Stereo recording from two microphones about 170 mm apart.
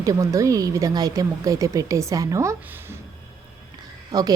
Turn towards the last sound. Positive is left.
turn(degrees=-25)  # may be behind; listen again after turning